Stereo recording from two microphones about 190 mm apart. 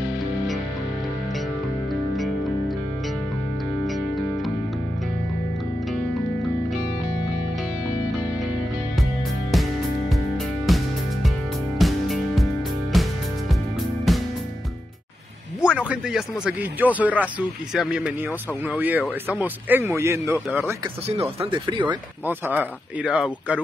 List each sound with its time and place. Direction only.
9.5 s music: centre (ahead or behind)
11.8 s music: centre (ahead or behind)
15.6 s a man's voice: 5° right (ahead or behind)
21.1 s speech: 30° right (ahead or behind)
22.2 s speech: 10° right (ahead or behind)